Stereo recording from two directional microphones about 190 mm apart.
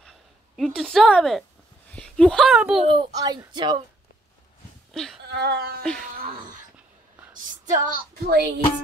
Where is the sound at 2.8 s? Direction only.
25° right (ahead or behind).